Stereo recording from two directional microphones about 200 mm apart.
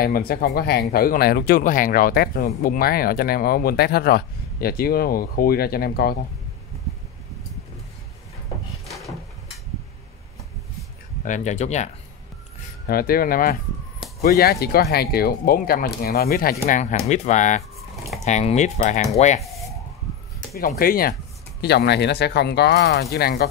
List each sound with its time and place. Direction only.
0.0 s speech: 50° left (ahead or behind)
11.2 s speech: 35° left (ahead or behind)
12.8 s speech: 50° left (ahead or behind); by 19.4 s 35° left (ahead or behind)
20.5 s speech: 45° left (ahead or behind)